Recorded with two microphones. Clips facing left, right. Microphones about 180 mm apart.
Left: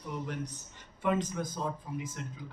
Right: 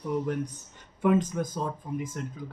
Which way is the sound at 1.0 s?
50° right (ahead or behind).